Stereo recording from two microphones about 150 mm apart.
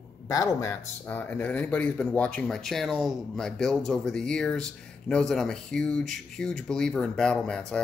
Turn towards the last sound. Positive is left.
turn(degrees=5)  # may be behind; listen again after turning